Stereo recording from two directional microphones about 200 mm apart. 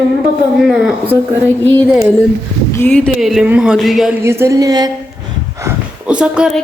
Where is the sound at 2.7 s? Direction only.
5° left (ahead or behind).